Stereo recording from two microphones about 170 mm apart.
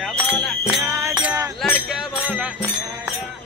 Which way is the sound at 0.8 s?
15° right (ahead or behind).